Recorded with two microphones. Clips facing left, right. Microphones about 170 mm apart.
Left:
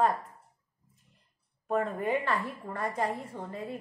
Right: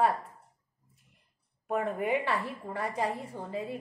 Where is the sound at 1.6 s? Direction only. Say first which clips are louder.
Left 1 dB; 10° right (ahead or behind).